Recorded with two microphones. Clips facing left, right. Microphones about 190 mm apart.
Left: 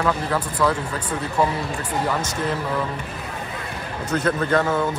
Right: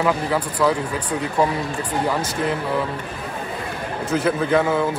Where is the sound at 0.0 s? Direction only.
10° right (ahead or behind).